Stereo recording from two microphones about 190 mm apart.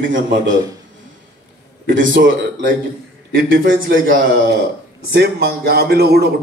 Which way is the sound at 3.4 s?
80° right.